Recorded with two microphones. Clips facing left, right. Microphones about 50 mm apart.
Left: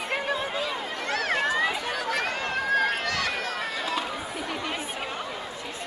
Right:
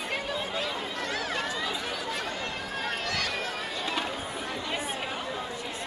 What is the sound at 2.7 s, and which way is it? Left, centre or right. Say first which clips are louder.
Run: left 6 dB; left.